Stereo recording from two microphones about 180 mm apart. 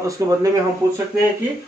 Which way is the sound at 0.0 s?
20° right (ahead or behind).